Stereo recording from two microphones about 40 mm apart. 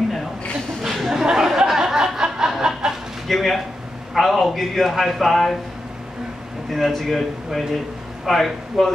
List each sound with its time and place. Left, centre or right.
0.8 s a sound: centre
1.2 s snicker: centre
3.3 s a man's voice: centre
6.7 s a man's voice: centre